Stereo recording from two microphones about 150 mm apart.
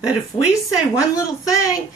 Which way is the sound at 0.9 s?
20° left (ahead or behind).